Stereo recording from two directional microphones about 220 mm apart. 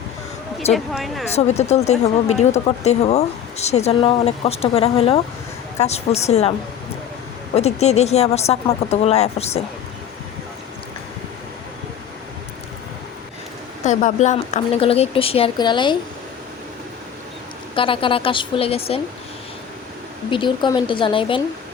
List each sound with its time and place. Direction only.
0.7 s speech: centre (ahead or behind)
1.3 s speech: 30° left (ahead or behind)
7.5 s speech: 30° left (ahead or behind)
13.8 s speech: 35° left (ahead or behind)
17.7 s speech: 25° left (ahead or behind)
20.3 s speech: 20° left (ahead or behind)